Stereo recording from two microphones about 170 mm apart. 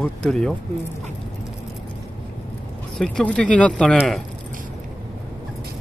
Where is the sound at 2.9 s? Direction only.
5° left (ahead or behind).